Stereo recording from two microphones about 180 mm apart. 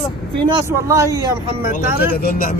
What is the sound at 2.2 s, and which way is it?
Speech, 55° left (ahead or behind).